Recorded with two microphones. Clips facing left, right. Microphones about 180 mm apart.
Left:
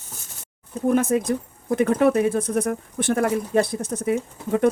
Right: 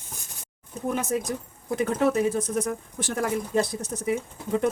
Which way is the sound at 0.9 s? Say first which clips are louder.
Left 7 dB; 55° left (ahead or behind).